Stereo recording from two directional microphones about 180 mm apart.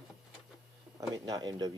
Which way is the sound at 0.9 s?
20° right (ahead or behind).